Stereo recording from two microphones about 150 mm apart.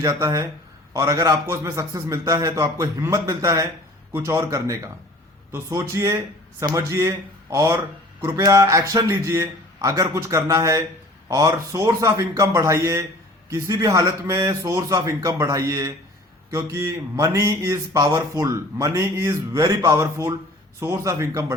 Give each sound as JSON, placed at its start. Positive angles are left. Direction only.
{"t": 0.0, "sound": "speech", "side_deg": -20}